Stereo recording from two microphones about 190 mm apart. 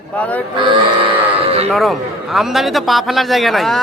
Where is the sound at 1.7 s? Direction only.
Centre (ahead or behind).